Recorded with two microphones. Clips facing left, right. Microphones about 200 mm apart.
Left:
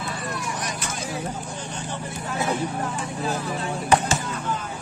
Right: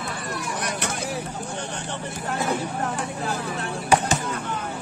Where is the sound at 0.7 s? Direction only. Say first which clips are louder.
Right 3 dB; 65° right (ahead or behind).